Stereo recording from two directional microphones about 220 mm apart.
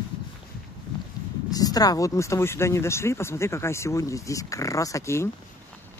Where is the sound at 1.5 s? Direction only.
15° left (ahead or behind).